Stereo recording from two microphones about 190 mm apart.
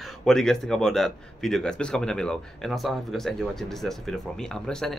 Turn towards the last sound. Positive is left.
turn(degrees=5)  # may be behind; listen again after turning